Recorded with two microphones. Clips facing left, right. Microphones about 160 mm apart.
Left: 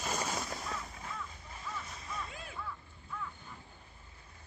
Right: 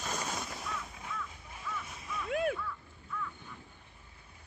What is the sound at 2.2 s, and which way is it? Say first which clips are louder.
Whip: right 14 dB; 70° right (ahead or behind).